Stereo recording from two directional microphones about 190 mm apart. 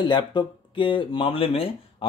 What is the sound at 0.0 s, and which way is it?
Speech, 25° left (ahead or behind).